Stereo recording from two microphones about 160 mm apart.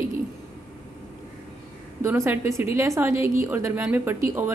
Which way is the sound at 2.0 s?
15° right (ahead or behind).